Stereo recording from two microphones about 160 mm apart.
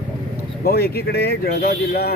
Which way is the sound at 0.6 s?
75° left (ahead or behind).